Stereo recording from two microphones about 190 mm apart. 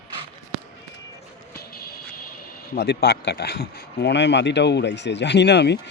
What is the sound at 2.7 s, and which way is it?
Speech, 60° left (ahead or behind).